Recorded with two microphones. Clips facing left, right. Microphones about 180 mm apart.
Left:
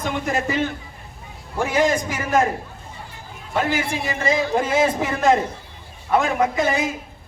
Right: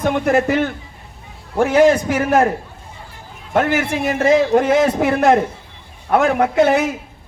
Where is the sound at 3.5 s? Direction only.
65° right (ahead or behind).